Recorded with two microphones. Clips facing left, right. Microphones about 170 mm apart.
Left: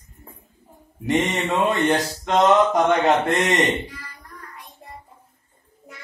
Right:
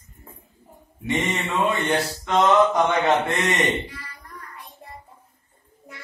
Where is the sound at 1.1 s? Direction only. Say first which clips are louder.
Left 3 dB; 40° left (ahead or behind).